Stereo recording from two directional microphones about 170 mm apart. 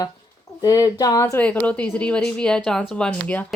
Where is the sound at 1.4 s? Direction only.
10° left (ahead or behind).